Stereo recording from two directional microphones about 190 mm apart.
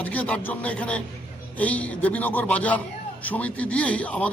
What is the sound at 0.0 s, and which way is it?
A man's voice, 10° left (ahead or behind).